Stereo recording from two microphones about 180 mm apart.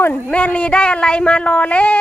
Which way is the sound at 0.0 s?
5° left (ahead or behind).